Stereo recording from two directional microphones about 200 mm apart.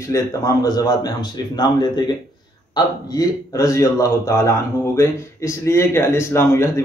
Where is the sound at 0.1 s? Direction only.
15° left (ahead or behind).